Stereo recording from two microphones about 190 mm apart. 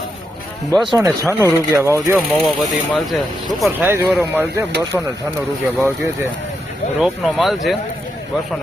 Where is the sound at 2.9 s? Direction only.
Centre (ahead or behind).